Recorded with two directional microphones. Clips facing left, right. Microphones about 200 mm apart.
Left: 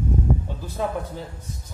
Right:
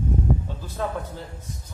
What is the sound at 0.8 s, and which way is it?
Speech, 10° left (ahead or behind).